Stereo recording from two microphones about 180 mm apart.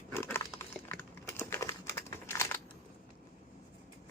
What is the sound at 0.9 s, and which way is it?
Crumpling, 15° left (ahead or behind).